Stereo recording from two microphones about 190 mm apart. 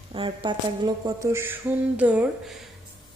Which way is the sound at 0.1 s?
25° right (ahead or behind).